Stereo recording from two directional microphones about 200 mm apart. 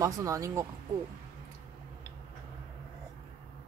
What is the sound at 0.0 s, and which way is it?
Speech, 15° right (ahead or behind).